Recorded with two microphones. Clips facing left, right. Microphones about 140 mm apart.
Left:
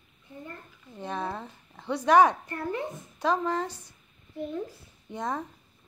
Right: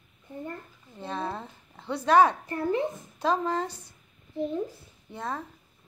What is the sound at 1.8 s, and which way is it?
Speech, 15° left (ahead or behind).